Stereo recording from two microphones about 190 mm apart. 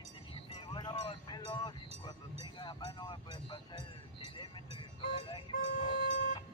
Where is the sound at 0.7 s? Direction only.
20° left (ahead or behind).